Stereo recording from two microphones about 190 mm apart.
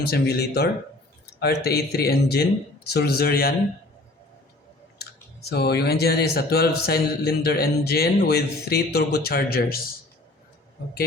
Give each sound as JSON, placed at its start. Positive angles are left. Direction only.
{"t": 0.0, "sound": "a man's voice", "side_deg": 55}
{"t": 5.5, "sound": "a man's voice", "side_deg": 60}